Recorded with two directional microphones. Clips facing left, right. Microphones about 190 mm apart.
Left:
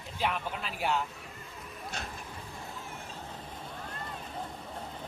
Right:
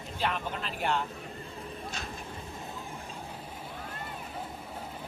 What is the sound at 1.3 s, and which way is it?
Vehicle, 30° right (ahead or behind).